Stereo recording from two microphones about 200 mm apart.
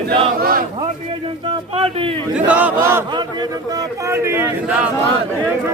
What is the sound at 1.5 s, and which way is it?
Speech, 30° right (ahead or behind).